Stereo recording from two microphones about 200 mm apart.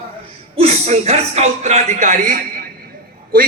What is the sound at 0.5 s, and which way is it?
A man's voice, 30° right (ahead or behind).